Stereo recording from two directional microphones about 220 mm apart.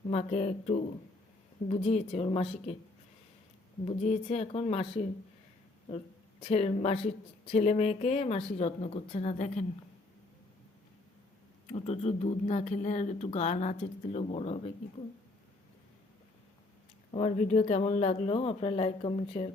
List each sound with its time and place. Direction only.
0.1 s speech: 30° left (ahead or behind)
3.8 s speech: 30° left (ahead or behind)
6.4 s speech: 30° left (ahead or behind)
11.7 s speech: 30° left (ahead or behind)
17.1 s speech: 30° left (ahead or behind)